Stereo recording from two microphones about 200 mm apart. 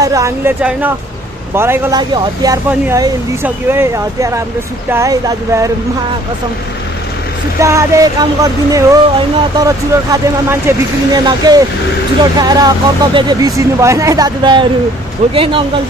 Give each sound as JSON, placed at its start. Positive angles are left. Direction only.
{"t": 0.0, "sound": "speech", "side_deg": -15}
{"t": 7.6, "sound": "speech", "side_deg": -15}